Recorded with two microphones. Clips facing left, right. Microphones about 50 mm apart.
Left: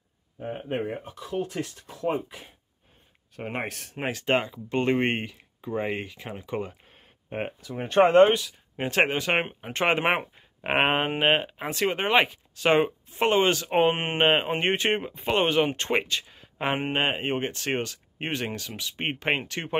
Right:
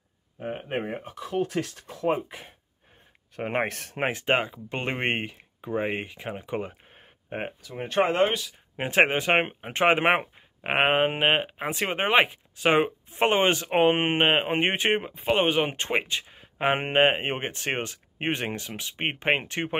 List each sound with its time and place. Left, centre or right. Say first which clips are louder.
0.4 s speech: even; right
4.1 s speech: left 1 dB; right
6.7 s a sound: right 1 dB; right
7.4 s speech: left 1 dB; centre
8.7 s speech: right 2 dB; right
9.6 s speech: right 3 dB; centre
10.3 s speech: left 1 dB; centre
13.1 s speech: even; right
14.1 s speech: even; centre
14.5 s speech: right 1 dB; centre
16.7 s speech: right 5 dB; right